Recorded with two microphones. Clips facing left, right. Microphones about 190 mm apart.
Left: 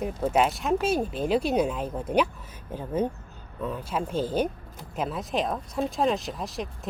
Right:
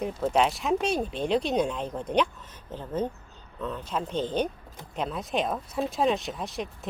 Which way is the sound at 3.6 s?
10° left (ahead or behind).